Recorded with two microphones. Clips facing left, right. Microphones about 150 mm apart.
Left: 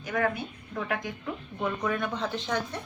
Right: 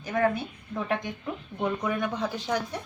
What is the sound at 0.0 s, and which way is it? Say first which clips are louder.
A woman's voice: right 3 dB; 30° right (ahead or behind).